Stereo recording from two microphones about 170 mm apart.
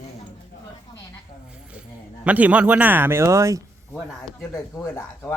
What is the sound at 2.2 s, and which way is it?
Speech, 10° right (ahead or behind).